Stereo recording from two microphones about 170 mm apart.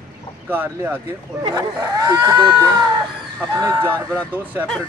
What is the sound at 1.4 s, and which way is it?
Speech, 25° right (ahead or behind).